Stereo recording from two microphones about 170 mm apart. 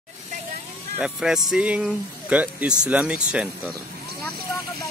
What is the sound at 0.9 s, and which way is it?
Speech, 5° right (ahead or behind).